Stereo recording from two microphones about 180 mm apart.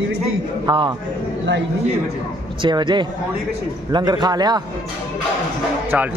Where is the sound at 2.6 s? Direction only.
25° right (ahead or behind).